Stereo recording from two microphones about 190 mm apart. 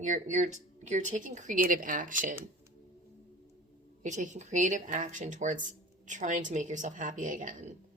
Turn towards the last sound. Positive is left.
turn(degrees=-45)  # may be behind; listen again after turning